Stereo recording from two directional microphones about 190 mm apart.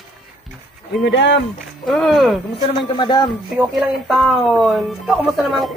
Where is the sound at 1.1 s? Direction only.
75° left (ahead or behind).